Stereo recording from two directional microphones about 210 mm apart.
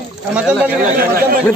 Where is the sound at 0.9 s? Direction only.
45° right (ahead or behind).